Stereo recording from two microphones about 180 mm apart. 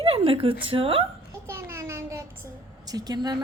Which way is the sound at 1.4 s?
15° right (ahead or behind).